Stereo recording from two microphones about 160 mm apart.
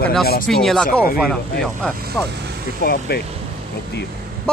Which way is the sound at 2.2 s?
20° left (ahead or behind).